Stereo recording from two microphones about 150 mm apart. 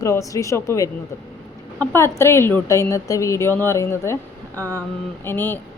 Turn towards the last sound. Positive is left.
turn(degrees=15)  # may be behind; listen again after turning